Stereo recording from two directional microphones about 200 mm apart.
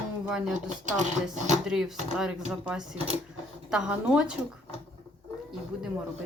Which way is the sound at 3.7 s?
5° right (ahead or behind).